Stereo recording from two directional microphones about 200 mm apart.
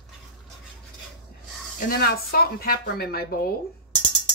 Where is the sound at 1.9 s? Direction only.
50° left (ahead or behind).